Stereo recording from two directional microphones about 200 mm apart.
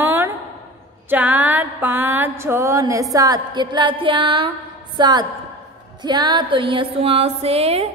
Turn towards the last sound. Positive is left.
turn(degrees=-30)  # may be behind; listen again after turning